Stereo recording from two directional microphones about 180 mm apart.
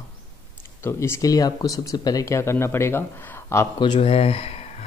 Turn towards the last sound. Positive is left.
turn(degrees=35)  # may be behind; listen again after turning